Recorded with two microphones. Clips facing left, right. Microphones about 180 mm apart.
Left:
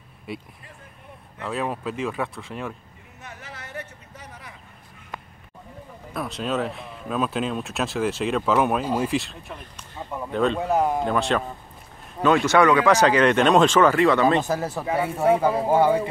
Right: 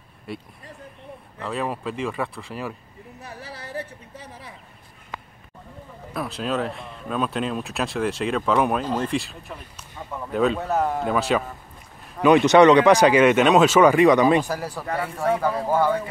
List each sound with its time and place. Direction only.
0.3 s speech: centre (ahead or behind)
3.2 s a sound: 35° right (ahead or behind)
6.1 s speech: centre (ahead or behind)
10.6 s speech: 10° left (ahead or behind)
11.1 s speech: 5° right (ahead or behind)
12.2 s speech: 15° right (ahead or behind)
14.4 s speech: 25° left (ahead or behind)